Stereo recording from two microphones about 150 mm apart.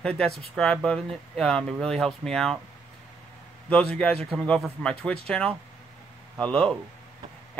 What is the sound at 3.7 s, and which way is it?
Speech, 10° left (ahead or behind).